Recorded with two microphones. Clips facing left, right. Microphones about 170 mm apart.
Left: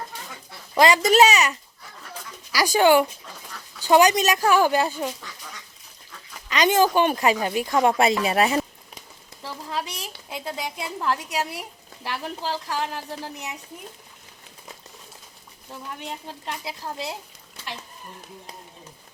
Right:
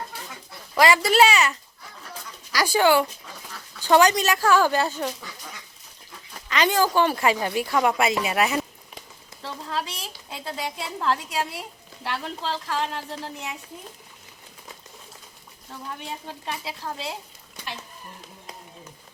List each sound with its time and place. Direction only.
0.8 s a woman's voice: 20° left (ahead or behind)
6.5 s speech: 20° left (ahead or behind)
9.6 s a sound: 15° left (ahead or behind)
10.2 s a woman's voice: 15° left (ahead or behind)